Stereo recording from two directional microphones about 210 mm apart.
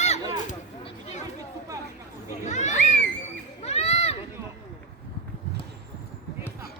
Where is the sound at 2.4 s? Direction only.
35° left (ahead or behind).